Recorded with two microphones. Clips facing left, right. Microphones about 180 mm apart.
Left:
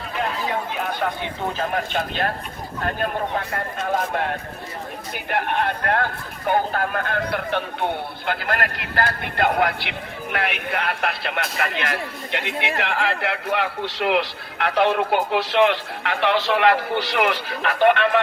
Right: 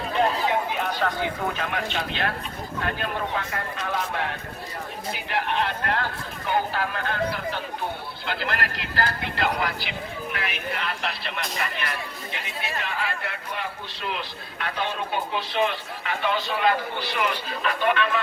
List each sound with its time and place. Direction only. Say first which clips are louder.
1.2 s a man's voice: left 1 dB; 30° left (ahead or behind)
1.9 s speech: left 4 dB; 45° left (ahead or behind); by 7.9 s 65° left (ahead or behind)
8.3 s speech: left 4 dB; 50° left (ahead or behind)